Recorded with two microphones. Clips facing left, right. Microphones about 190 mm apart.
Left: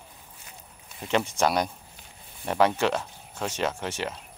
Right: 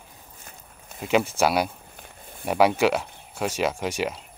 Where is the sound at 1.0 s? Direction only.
5° right (ahead or behind).